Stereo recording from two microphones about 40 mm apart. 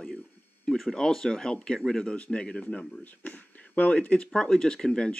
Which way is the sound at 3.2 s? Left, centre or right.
Left.